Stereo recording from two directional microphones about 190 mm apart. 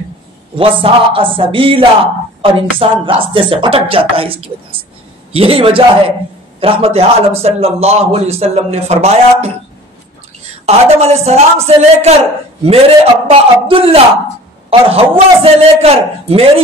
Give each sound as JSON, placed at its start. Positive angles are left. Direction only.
{"t": 0.6, "sound": "a man's voice", "side_deg": -30}
{"t": 10.6, "sound": "a man's voice", "side_deg": -35}
{"t": 13.3, "sound": "a man's voice", "side_deg": -30}